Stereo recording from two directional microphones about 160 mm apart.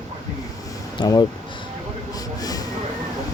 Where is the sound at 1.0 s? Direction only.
30° left (ahead or behind).